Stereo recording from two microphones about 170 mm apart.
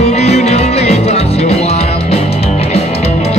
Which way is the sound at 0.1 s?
40° left (ahead or behind).